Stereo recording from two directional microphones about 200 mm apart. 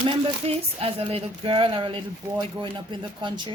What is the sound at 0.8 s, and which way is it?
A woman's voice, 30° right (ahead or behind).